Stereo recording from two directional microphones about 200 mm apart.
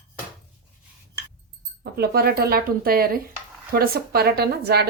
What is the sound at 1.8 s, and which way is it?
Speech, 50° right (ahead or behind).